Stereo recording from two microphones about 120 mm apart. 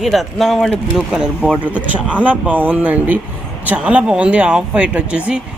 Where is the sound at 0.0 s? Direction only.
Centre (ahead or behind).